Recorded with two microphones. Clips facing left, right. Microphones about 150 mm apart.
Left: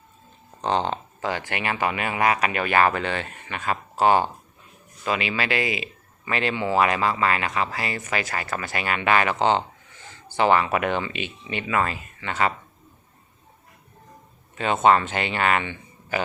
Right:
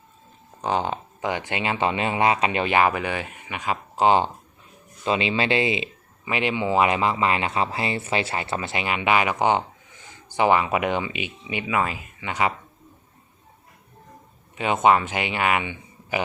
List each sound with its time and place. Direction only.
0.6 s speech: 10° right (ahead or behind); by 5.9 s 25° right (ahead or behind)
6.2 s speech: 15° right (ahead or behind)
14.5 s speech: 15° right (ahead or behind)